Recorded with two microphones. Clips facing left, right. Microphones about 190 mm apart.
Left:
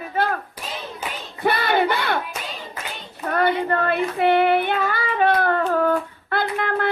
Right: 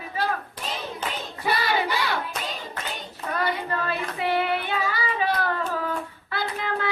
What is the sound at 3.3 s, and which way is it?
Child singing, 55° left (ahead or behind).